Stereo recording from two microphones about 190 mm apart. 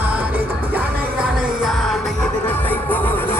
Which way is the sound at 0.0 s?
10° right (ahead or behind).